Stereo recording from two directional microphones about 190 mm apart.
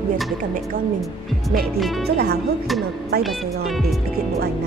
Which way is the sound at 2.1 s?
55° right (ahead or behind).